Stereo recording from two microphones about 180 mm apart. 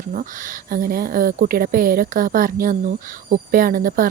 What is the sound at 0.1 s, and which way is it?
A woman's voice, 50° right (ahead or behind).